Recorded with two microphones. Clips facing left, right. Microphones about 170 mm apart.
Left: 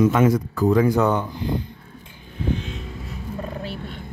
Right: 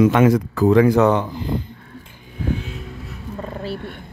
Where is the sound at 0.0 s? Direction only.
85° right.